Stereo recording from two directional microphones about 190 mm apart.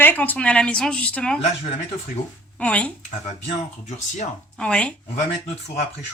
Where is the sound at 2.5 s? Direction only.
5° left (ahead or behind).